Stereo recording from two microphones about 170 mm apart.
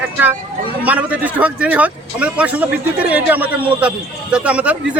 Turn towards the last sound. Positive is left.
turn(degrees=-5)  # may be behind; listen again after turning